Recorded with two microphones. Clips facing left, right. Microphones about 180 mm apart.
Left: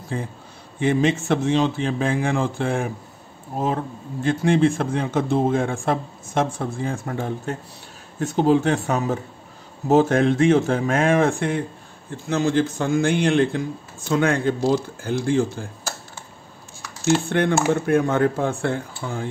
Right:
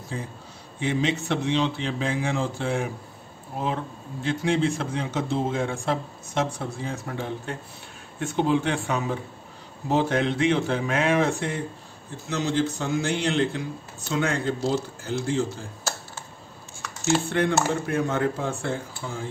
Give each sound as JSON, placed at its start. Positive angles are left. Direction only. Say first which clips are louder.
{"t": 0.1, "sound": "a man's voice", "louder": "left 5 dB", "side_deg": 55}
{"t": 17.3, "sound": "speech", "louder": "left 4 dB", "side_deg": 55}